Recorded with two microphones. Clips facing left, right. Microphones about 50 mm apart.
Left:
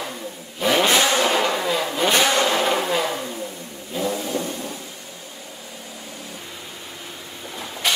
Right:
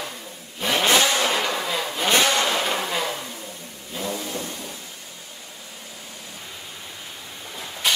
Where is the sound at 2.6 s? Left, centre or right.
Centre.